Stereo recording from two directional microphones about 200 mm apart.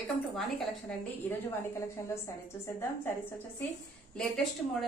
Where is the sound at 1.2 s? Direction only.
10° left (ahead or behind).